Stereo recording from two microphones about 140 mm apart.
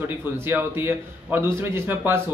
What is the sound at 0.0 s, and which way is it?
A man's voice, 15° right (ahead or behind).